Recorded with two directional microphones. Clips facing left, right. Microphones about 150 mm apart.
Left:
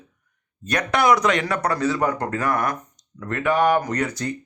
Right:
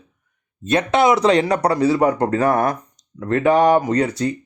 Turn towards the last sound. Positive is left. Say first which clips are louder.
# right 6 dB
turn(degrees=-25)  # may be behind; listen again after turning